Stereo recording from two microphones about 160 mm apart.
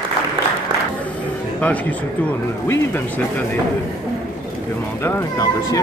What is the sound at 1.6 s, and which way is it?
Speech, 10° left (ahead or behind).